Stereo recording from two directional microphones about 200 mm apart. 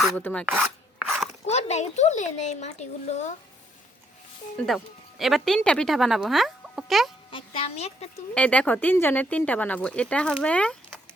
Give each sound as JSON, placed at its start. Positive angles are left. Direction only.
{"t": 0.2, "sound": "speech", "side_deg": 10}
{"t": 0.4, "sound": "rub", "side_deg": -5}
{"t": 1.5, "sound": "speech", "side_deg": 35}
{"t": 4.6, "sound": "speech", "side_deg": 0}
{"t": 7.3, "sound": "speech", "side_deg": 25}
{"t": 8.4, "sound": "speech", "side_deg": 5}